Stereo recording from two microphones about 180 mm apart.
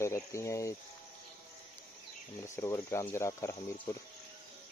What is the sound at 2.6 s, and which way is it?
Speech, 15° left (ahead or behind).